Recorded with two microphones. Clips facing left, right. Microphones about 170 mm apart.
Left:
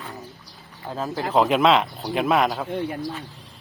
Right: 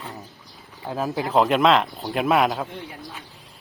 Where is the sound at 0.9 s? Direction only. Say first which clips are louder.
Right 2 dB; 10° right (ahead or behind).